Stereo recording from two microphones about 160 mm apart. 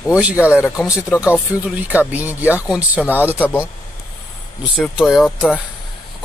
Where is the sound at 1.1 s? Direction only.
15° left (ahead or behind).